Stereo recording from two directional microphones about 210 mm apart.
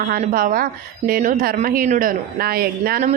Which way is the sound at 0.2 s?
40° right (ahead or behind).